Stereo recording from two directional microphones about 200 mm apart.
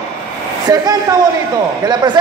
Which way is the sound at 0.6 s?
20° right (ahead or behind).